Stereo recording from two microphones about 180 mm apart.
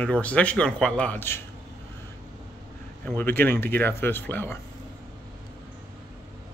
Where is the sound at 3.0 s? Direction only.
10° left (ahead or behind).